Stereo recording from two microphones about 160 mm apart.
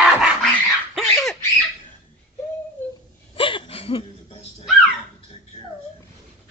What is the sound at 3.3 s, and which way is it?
Hiccup, 35° left (ahead or behind).